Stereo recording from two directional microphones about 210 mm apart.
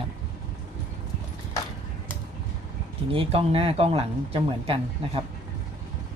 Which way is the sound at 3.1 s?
25° right (ahead or behind).